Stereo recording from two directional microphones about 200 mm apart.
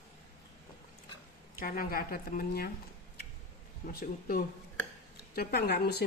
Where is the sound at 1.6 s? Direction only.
45° left (ahead or behind).